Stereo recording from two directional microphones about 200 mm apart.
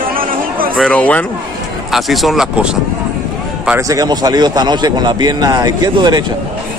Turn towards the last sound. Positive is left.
turn(degrees=-20)  # may be behind; listen again after turning